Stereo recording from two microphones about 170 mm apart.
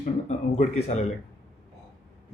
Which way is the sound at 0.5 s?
40° left (ahead or behind).